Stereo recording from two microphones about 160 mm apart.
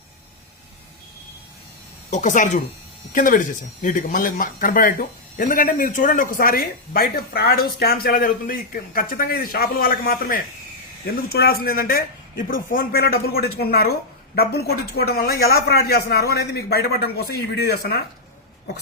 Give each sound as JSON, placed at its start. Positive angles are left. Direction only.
{"t": 2.0, "sound": "speech", "side_deg": 50}
{"t": 11.0, "sound": "a man's voice", "side_deg": 70}